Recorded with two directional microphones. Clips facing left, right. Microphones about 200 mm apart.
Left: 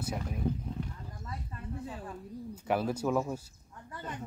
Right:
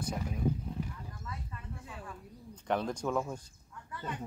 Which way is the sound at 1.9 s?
35° left (ahead or behind).